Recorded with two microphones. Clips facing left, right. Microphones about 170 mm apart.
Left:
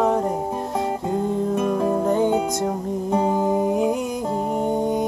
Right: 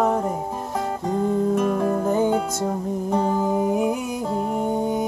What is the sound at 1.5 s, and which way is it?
Music, 10° left (ahead or behind).